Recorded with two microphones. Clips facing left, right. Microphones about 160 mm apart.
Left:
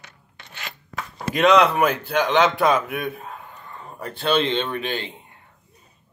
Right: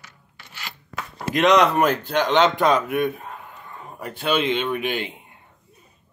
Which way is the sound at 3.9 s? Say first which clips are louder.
Left 1 dB; 10° right (ahead or behind).